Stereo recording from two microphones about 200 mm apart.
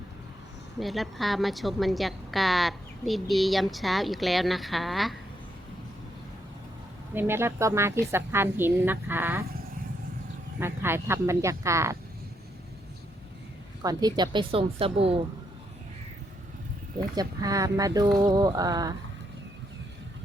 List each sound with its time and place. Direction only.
0.8 s a woman's voice: centre (ahead or behind)
7.1 s a woman's voice: 10° right (ahead or behind)
10.6 s a woman's voice: 10° right (ahead or behind)
13.8 s a woman's voice: 20° right (ahead or behind)
17.2 s a woman's voice: 15° right (ahead or behind)